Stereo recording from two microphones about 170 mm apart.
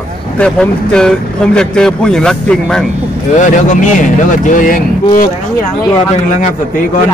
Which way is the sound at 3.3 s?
45° left (ahead or behind).